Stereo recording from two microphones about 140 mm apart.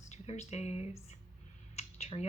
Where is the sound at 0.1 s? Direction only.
55° left (ahead or behind).